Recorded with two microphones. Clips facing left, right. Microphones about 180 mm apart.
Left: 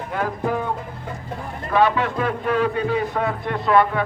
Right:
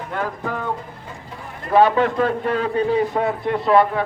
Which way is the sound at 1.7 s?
30° right (ahead or behind).